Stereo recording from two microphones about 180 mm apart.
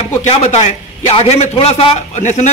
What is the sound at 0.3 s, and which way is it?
A man's voice, 35° left (ahead or behind).